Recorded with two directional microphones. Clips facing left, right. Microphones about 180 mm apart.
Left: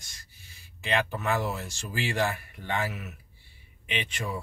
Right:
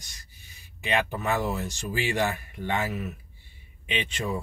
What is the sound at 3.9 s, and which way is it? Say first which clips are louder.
Speech: right 3 dB; 20° right (ahead or behind).